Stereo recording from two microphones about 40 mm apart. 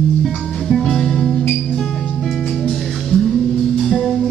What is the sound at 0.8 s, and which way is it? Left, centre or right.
Music, centre.